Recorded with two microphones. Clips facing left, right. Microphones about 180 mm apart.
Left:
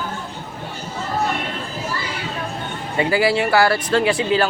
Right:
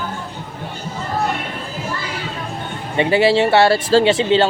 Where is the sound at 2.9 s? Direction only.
25° right (ahead or behind).